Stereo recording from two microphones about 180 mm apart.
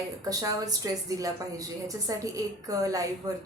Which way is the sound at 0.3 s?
20° right (ahead or behind).